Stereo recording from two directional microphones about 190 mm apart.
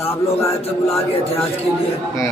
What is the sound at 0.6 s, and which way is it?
Speech, 30° left (ahead or behind).